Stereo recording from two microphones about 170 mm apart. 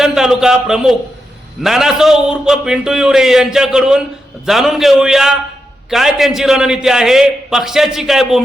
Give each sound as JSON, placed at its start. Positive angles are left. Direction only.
{"t": 0.0, "sound": "a man's voice", "side_deg": 0}